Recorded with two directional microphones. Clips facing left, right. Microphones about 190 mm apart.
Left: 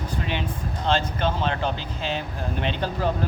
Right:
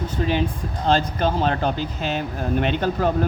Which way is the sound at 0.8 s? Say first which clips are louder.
Right 4 dB; 40° right (ahead or behind).